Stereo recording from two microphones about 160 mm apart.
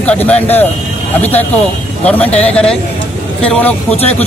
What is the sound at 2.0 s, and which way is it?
Speech, 10° left (ahead or behind).